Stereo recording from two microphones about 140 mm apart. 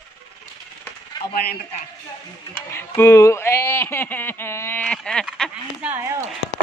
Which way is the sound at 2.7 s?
20° left (ahead or behind).